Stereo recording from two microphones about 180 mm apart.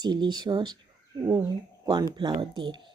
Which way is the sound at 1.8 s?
20° right (ahead or behind).